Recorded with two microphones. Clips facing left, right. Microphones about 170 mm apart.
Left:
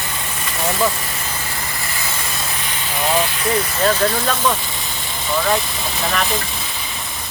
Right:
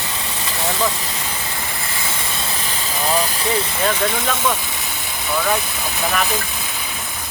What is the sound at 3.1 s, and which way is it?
Speech, 35° right (ahead or behind).